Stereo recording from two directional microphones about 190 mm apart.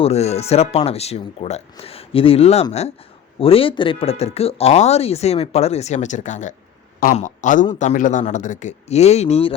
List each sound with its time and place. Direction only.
0.0 s a man's voice: 35° left (ahead or behind)